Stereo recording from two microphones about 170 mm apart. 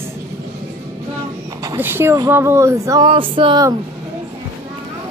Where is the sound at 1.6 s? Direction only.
15° right (ahead or behind).